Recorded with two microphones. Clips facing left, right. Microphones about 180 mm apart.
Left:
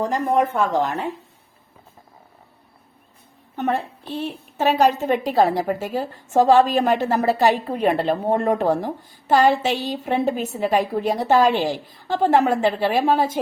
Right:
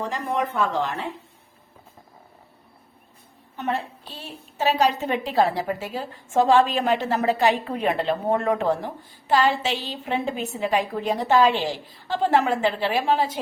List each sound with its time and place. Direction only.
0.0 s a woman's voice: 45° left (ahead or behind)
3.5 s a woman's voice: 50° left (ahead or behind)